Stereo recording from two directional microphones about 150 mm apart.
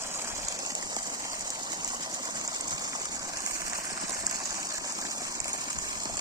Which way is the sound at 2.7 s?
25° right (ahead or behind).